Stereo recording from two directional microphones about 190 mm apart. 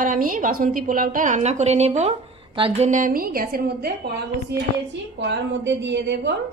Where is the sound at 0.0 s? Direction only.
45° right (ahead or behind).